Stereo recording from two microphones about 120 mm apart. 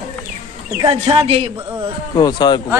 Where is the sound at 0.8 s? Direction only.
55° right (ahead or behind).